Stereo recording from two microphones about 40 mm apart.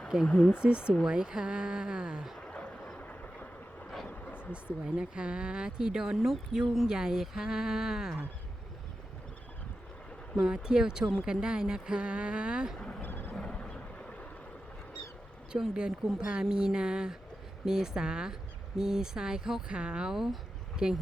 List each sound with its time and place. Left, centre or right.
0.2 s speech: left
0.6 s speech: right
2.4 s a sound: left
3.0 s vehicle: left
4.5 s speech: right
6.1 s a woman's voice: centre
10.3 s speech: centre
13.0 s vehicle: left
13.4 s vehicle: left
15.5 s speech: right
16.0 s a woman's voice: centre
19.6 s speech: right
20.1 s a sound: centre